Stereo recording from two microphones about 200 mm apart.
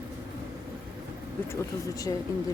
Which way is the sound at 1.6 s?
15° left (ahead or behind).